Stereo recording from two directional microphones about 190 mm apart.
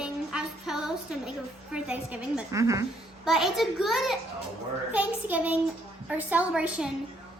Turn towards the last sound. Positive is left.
turn(degrees=-5)  # may be behind; listen again after turning